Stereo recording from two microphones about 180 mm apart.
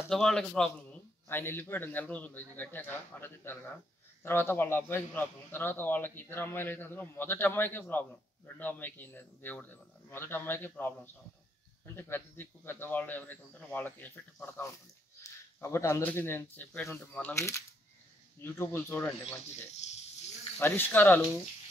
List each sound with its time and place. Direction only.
0.1 s a man's voice: centre (ahead or behind)
15.2 s a sound: 15° left (ahead or behind)
15.6 s a man's voice: 15° left (ahead or behind)
19.8 s goat: 40° left (ahead or behind)
20.5 s a man's voice: 10° left (ahead or behind)